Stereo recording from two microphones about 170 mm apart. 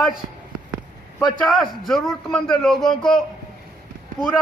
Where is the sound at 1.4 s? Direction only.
Centre (ahead or behind).